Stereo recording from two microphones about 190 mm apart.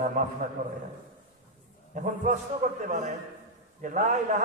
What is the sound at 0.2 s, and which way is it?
Speech, 45° right (ahead or behind).